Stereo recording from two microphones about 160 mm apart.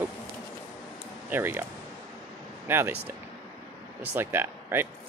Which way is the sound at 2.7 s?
15° right (ahead or behind).